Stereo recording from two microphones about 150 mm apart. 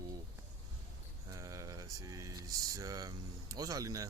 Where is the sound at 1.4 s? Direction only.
20° right (ahead or behind).